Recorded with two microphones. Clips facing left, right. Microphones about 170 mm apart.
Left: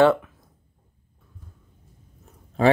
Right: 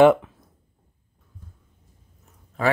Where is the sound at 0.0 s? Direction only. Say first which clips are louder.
Right 3 dB; 15° right (ahead or behind).